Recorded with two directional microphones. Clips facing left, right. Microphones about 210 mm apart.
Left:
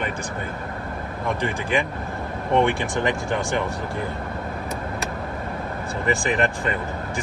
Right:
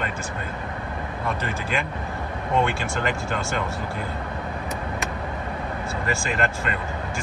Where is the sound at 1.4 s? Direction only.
15° left (ahead or behind).